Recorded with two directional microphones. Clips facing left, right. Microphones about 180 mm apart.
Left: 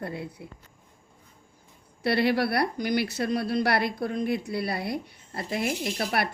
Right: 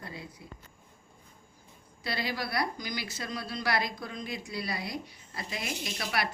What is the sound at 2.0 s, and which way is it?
A woman's voice, 65° left (ahead or behind).